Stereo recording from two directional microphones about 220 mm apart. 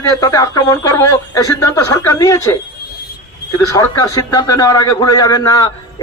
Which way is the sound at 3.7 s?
15° left (ahead or behind).